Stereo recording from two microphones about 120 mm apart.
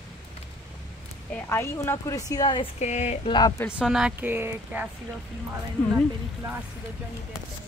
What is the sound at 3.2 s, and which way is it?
Speech, 40° left (ahead or behind).